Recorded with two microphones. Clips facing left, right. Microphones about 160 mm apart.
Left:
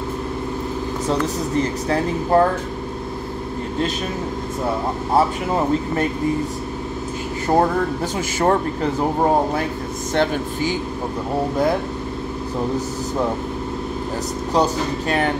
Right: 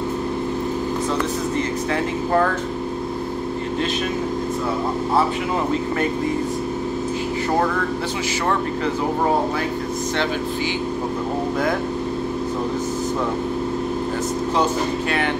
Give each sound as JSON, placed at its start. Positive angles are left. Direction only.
{"t": 1.6, "sound": "speech", "side_deg": 35}
{"t": 14.5, "sound": "speech", "side_deg": 40}